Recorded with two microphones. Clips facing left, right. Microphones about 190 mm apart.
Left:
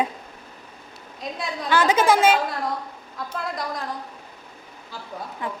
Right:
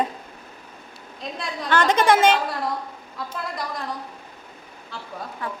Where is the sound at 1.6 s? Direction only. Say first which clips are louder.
Even; 10° left (ahead or behind).